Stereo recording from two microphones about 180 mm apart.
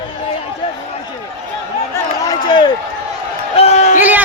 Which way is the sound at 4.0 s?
10° right (ahead or behind).